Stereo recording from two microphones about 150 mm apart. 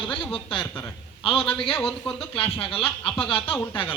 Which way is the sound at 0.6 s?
10° left (ahead or behind).